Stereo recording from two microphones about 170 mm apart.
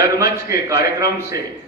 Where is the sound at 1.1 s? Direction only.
15° right (ahead or behind).